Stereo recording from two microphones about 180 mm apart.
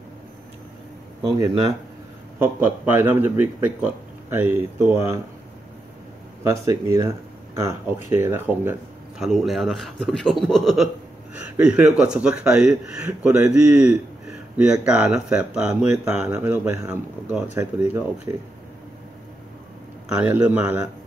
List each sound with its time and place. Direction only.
1.4 s a man's voice: 20° right (ahead or behind)
6.4 s a man's voice: 15° right (ahead or behind)
9.2 s speech: centre (ahead or behind)
11.3 s a sound: 5° right (ahead or behind)
12.0 s a man's voice: 5° right (ahead or behind)
20.2 s a man's voice: 5° right (ahead or behind)